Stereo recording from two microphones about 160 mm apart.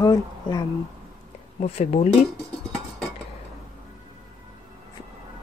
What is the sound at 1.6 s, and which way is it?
Speech, 40° left (ahead or behind).